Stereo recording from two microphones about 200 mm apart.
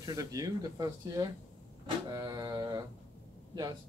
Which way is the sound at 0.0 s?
15° right (ahead or behind).